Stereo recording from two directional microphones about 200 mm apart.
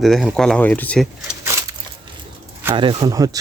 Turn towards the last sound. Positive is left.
turn(degrees=-20)  # may be behind; listen again after turning